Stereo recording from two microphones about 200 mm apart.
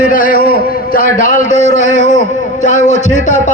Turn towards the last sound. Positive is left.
turn(degrees=40)  # may be behind; listen again after turning